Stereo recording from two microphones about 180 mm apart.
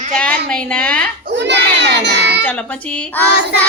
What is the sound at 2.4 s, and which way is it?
Speech, 10° left (ahead or behind).